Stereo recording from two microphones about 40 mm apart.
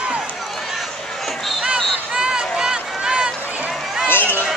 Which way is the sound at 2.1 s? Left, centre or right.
Centre.